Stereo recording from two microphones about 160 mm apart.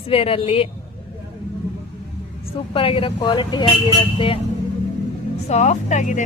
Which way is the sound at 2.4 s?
35° left (ahead or behind).